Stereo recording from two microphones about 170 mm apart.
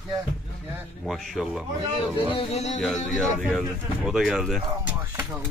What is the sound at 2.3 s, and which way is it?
Speech, 40° left (ahead or behind).